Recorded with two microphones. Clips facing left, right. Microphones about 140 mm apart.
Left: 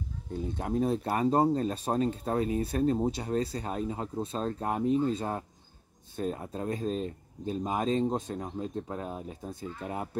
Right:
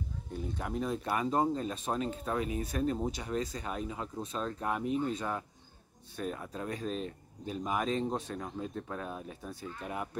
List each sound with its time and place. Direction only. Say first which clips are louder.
0.3 s speech: left 5 dB; 25° left (ahead or behind)